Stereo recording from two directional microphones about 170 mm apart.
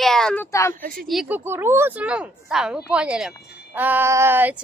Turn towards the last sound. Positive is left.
turn(degrees=-10)  # may be behind; listen again after turning